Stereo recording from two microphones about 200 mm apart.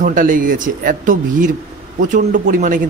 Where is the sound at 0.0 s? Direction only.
40° right (ahead or behind).